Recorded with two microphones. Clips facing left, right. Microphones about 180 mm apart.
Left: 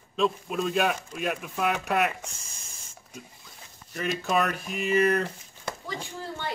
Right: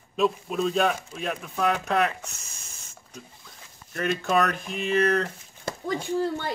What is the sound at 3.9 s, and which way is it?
Speech, centre (ahead or behind).